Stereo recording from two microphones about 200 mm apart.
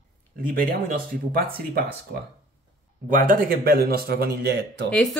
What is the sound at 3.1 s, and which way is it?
Speech, 45° right (ahead or behind).